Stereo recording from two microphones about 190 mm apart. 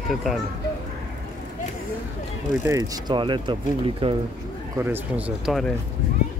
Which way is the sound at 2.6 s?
15° right (ahead or behind).